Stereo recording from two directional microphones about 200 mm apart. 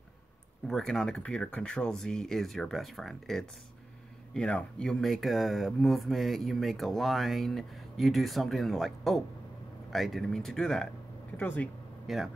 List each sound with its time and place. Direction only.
0.7 s speech: centre (ahead or behind)